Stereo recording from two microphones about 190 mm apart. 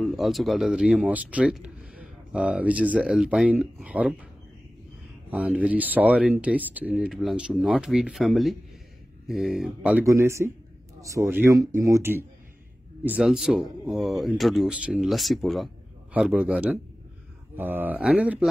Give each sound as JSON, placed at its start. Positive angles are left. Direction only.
{"t": 0.0, "sound": "speech", "side_deg": 0}
{"t": 5.3, "sound": "speech", "side_deg": -5}
{"t": 10.0, "sound": "speech", "side_deg": -15}